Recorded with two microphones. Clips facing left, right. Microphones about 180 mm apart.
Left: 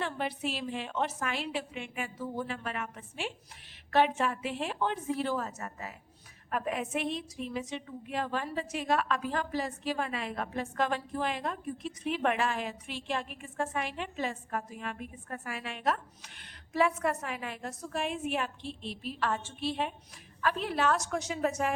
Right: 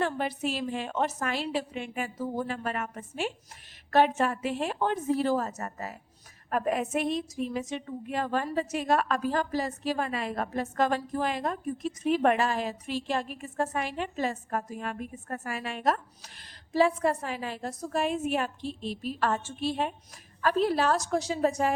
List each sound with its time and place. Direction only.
0.0 s a woman's voice: 45° right (ahead or behind)